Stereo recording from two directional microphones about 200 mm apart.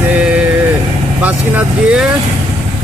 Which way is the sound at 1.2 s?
5° right (ahead or behind).